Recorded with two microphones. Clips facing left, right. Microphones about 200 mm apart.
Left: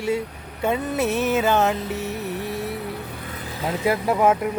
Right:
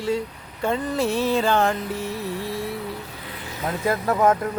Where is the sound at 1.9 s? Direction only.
20° left (ahead or behind).